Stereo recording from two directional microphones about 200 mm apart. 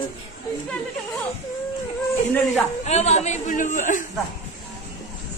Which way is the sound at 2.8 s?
35° left (ahead or behind).